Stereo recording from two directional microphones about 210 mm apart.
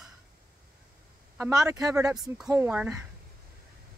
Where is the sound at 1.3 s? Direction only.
15° right (ahead or behind).